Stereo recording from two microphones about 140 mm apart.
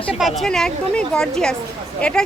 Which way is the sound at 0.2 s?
Centre (ahead or behind).